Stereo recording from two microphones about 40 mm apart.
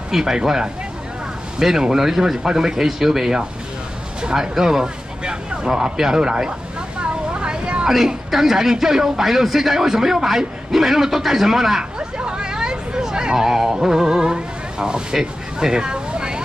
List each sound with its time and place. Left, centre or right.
0.1 s speech: centre
7.0 s vehicle: right
7.8 s speech: centre
12.2 s hubbub: centre
14.3 s a sound: right